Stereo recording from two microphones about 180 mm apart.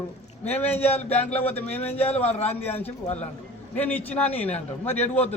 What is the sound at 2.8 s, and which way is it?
Speech, 35° left (ahead or behind).